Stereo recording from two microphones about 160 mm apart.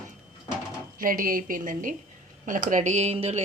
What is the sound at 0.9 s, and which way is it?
A woman's voice, 60° right (ahead or behind).